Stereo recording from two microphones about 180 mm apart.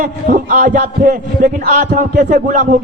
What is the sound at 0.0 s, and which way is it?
Speech, 50° right (ahead or behind).